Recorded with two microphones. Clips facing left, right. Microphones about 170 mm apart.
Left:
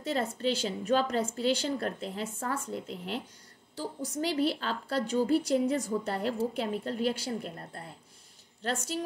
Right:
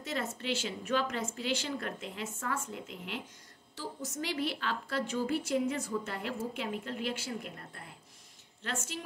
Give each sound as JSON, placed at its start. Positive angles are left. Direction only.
{"t": 0.0, "sound": "a woman's voice", "side_deg": 35}